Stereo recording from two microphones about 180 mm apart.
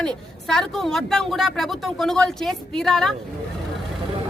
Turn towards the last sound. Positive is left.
turn(degrees=0)  # may be behind; listen again after turning